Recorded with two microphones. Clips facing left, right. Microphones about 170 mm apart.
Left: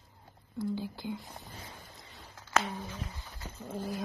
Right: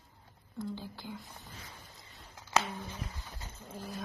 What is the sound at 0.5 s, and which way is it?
Speech, 15° left (ahead or behind).